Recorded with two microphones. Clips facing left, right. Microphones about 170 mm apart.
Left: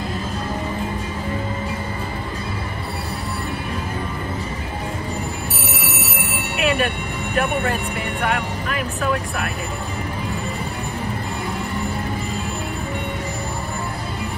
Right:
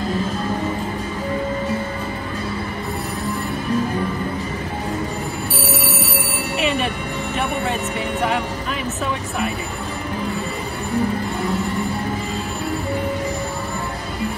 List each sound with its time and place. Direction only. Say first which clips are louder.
5.9 s a sound: right 3 dB; 30° right (ahead or behind)
6.5 s music: left 1 dB; centre (ahead or behind)
7.3 s speech: left 3 dB; centre (ahead or behind)